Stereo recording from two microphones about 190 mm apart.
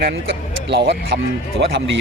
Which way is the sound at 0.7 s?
65° right (ahead or behind).